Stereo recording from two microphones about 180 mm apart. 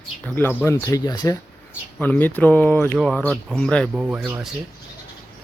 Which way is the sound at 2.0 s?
10° left (ahead or behind).